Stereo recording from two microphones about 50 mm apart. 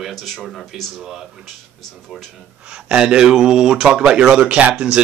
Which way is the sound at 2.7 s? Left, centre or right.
Centre.